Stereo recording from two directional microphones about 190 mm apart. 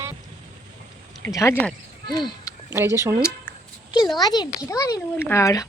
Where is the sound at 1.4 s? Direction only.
10° left (ahead or behind).